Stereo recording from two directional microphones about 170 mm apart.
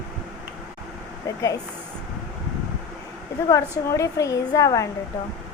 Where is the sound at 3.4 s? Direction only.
20° left (ahead or behind).